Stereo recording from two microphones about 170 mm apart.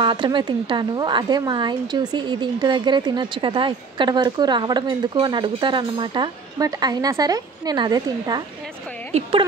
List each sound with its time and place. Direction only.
0.0 s a woman's voice: 30° right (ahead or behind)